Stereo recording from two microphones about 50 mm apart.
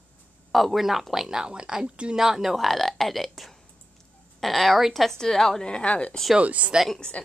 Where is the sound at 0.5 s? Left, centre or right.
Centre; by 2.1 s right.